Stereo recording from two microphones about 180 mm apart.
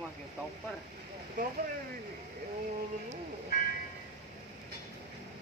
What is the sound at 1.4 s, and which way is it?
Speech, 50° right (ahead or behind).